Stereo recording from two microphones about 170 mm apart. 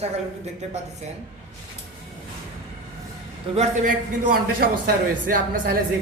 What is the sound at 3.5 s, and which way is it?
Speech, 40° right (ahead or behind).